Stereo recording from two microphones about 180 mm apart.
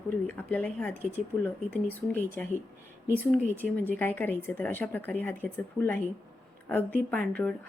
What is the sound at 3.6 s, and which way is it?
Speech, 10° left (ahead or behind).